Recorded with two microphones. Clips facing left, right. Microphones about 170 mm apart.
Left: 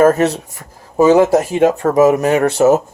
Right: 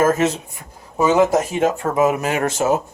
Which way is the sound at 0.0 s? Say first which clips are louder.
Left 5 dB; 35° left (ahead or behind).